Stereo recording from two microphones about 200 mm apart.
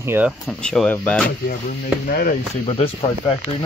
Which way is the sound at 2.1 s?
50° left (ahead or behind).